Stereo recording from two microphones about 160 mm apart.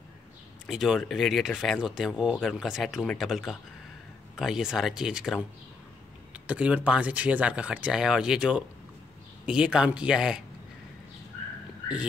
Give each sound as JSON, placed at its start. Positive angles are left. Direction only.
{"t": 0.7, "sound": "speech", "side_deg": 0}